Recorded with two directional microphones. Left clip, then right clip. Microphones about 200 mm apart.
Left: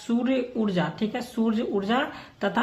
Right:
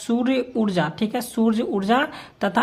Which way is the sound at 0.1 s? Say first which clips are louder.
Right 4 dB; 40° right (ahead or behind).